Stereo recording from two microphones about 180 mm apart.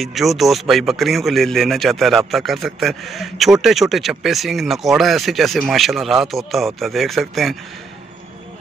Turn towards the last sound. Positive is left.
turn(degrees=0)  # may be behind; listen again after turning